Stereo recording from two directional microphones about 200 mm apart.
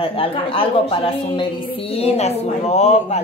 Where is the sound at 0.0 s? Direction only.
25° left (ahead or behind).